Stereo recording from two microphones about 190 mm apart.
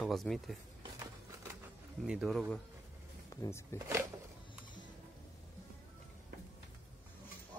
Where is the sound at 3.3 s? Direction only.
15° left (ahead or behind).